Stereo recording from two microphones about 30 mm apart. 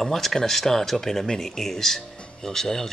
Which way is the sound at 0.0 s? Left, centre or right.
Centre.